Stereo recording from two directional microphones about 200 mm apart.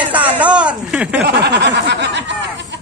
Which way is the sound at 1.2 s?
55° right (ahead or behind).